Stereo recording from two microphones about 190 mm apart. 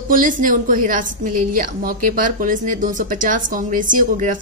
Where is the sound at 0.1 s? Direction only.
45° right (ahead or behind).